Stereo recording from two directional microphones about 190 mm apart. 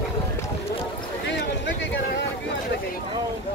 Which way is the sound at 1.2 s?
70° left (ahead or behind).